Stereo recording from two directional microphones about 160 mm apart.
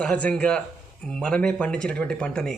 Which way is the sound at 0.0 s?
10° left (ahead or behind).